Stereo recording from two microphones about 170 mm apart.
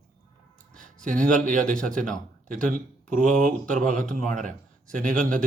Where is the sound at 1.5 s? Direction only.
50° right (ahead or behind).